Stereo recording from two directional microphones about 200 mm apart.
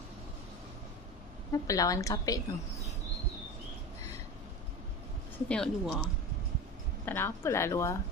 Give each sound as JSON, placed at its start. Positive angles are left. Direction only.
{"t": 1.5, "sound": "a woman's voice", "side_deg": 15}
{"t": 5.5, "sound": "speech", "side_deg": 0}
{"t": 7.1, "sound": "a woman's voice", "side_deg": 10}